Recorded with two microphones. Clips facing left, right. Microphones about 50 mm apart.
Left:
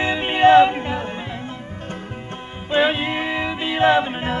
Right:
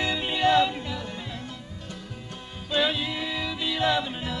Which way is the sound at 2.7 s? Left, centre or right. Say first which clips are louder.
Left 7 dB; left.